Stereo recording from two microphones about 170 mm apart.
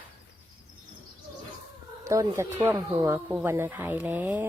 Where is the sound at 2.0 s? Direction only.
20° right (ahead or behind).